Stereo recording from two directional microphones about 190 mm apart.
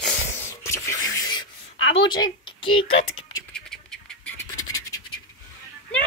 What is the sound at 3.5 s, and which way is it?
Duck, 5° left (ahead or behind).